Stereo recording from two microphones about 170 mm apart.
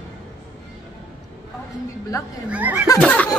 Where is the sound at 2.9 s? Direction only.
5° left (ahead or behind).